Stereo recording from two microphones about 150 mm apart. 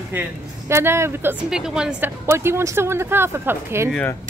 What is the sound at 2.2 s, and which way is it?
Speech, 15° right (ahead or behind).